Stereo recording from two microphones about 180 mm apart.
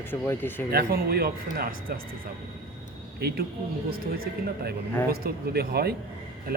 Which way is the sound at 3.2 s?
60° right (ahead or behind).